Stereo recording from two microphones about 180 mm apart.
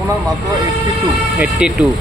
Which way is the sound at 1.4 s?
5° right (ahead or behind).